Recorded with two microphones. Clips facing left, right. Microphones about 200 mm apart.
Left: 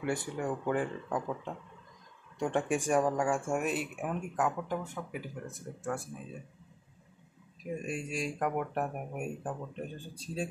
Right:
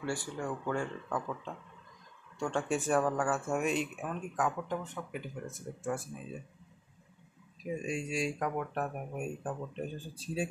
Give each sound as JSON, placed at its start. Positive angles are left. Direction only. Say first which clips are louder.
{"t": 0.0, "sound": "speech", "louder": "left 3 dB", "side_deg": 20}
{"t": 7.8, "sound": "speech", "louder": "right 2 dB", "side_deg": 5}